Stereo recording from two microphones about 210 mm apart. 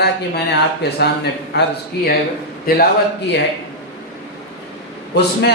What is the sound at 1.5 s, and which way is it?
A man's voice, 55° left (ahead or behind).